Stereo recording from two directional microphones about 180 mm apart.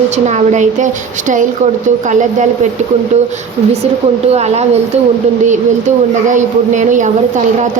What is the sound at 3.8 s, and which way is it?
A woman's voice, 35° right (ahead or behind).